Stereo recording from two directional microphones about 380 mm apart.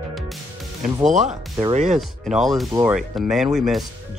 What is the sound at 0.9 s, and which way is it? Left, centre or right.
Speech, centre.